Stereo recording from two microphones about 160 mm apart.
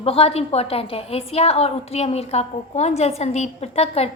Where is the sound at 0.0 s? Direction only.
40° left (ahead or behind).